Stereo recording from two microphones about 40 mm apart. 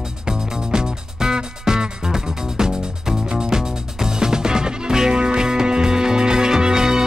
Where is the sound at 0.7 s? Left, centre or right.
Centre.